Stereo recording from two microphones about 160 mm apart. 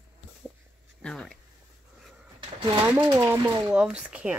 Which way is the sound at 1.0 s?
5° left (ahead or behind).